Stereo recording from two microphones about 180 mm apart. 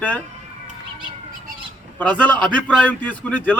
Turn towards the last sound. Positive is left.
turn(degrees=10)  # may be behind; listen again after turning